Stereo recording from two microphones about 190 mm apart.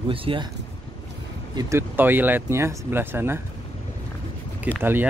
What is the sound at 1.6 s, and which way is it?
Speech, 15° right (ahead or behind).